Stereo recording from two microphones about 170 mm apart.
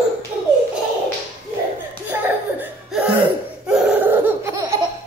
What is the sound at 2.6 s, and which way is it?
Cough, 5° right (ahead or behind).